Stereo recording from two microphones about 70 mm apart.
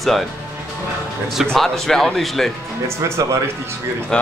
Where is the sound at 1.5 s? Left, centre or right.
Centre.